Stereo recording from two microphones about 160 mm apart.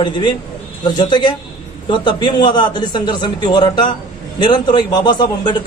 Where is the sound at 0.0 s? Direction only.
30° left (ahead or behind).